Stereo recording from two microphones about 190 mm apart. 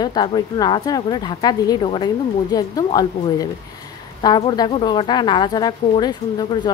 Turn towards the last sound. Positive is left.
turn(degrees=20)  # may be behind; listen again after turning